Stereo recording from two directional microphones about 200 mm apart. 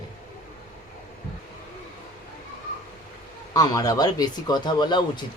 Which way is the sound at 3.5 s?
15° left (ahead or behind).